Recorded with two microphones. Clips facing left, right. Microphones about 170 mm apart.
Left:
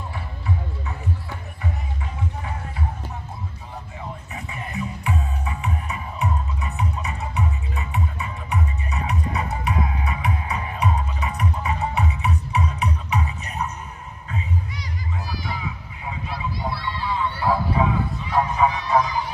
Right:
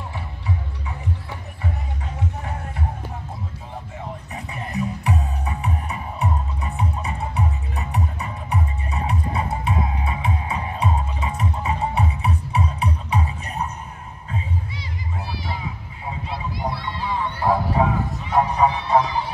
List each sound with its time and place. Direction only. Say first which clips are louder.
4.3 s music: right 2 dB; 35° right (ahead or behind)
16.3 s children playing: right 1 dB; 45° right (ahead or behind)
17.4 s a sound: right 3 dB; 45° right (ahead or behind)
18.4 s music: right 2 dB; 35° right (ahead or behind)